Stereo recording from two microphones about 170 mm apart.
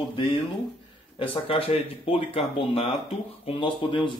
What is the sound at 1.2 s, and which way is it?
Speech, 30° left (ahead or behind).